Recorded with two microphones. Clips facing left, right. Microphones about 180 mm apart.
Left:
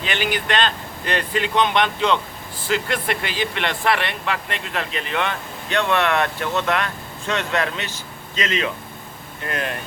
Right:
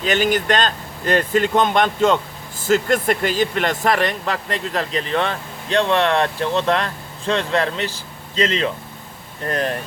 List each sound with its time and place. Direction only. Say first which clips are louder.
0.0 s speech: right 6 dB; 45° right (ahead or behind)